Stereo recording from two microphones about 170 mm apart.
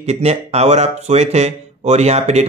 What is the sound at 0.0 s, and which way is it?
A man's voice, 40° right (ahead or behind).